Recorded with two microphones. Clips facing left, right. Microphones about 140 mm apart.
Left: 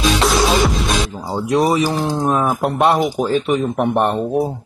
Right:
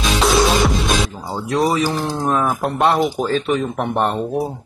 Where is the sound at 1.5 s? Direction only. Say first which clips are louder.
Left 2 dB; 25° left (ahead or behind).